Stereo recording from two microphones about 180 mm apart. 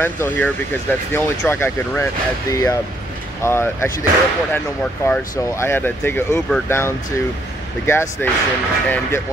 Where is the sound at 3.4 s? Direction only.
15° left (ahead or behind).